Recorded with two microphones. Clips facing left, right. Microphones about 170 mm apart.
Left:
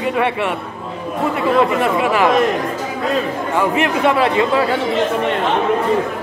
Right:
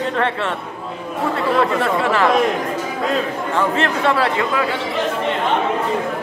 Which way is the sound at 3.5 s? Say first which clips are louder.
Left 2 dB; 15° left (ahead or behind).